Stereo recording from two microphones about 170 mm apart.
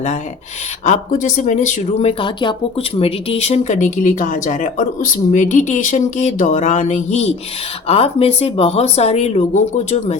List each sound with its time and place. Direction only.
0.9 s speech: 50° left (ahead or behind)